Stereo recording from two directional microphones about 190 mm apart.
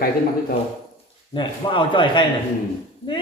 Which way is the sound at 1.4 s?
25° left (ahead or behind).